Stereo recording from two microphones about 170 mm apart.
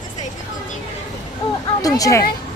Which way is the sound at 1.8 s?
20° left (ahead or behind).